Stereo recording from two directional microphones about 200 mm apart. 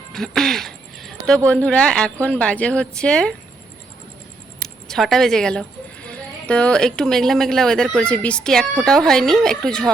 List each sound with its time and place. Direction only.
0.1 s a sound: centre (ahead or behind)
1.6 s a woman's voice: 5° left (ahead or behind)
4.6 s a woman's voice: centre (ahead or behind)